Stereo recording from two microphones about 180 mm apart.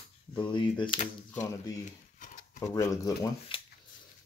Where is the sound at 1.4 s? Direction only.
45° left (ahead or behind).